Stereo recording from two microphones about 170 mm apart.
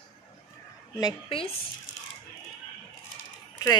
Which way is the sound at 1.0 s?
30° left (ahead or behind).